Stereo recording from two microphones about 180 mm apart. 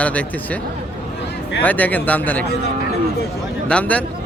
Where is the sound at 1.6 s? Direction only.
10° left (ahead or behind).